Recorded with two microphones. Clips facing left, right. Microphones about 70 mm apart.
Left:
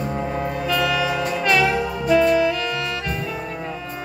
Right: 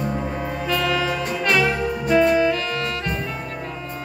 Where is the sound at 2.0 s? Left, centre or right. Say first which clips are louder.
Even; right.